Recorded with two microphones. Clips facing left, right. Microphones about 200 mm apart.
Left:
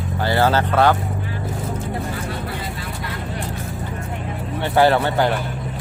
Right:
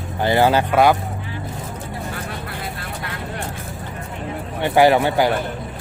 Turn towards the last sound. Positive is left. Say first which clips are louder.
# right 2 dB
turn(degrees=-10)  # may be behind; listen again after turning